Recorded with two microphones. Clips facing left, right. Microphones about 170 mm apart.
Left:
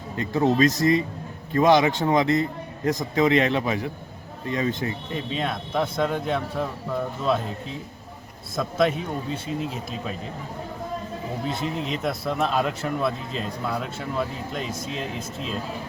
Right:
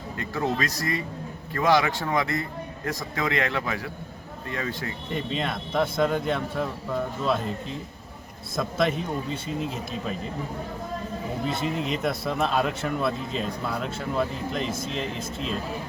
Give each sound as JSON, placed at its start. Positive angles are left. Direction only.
{"t": 0.2, "sound": "a man's voice", "side_deg": 20}
{"t": 5.1, "sound": "speech", "side_deg": 0}
{"t": 8.5, "sound": "speech", "side_deg": 0}
{"t": 11.4, "sound": "speech", "side_deg": 0}